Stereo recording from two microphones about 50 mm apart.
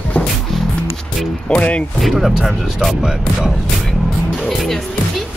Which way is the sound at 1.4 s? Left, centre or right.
Left.